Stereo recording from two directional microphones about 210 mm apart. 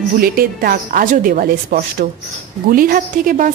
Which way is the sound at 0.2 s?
45° right (ahead or behind).